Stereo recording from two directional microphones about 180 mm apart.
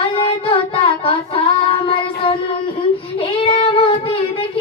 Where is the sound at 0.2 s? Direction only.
30° left (ahead or behind).